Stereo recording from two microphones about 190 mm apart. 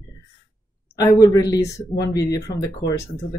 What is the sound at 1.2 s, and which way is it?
Speech, 20° left (ahead or behind).